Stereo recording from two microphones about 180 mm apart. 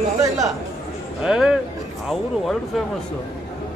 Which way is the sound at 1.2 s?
5° right (ahead or behind).